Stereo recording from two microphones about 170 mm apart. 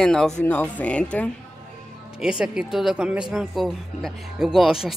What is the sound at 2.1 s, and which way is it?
Speech, 5° right (ahead or behind).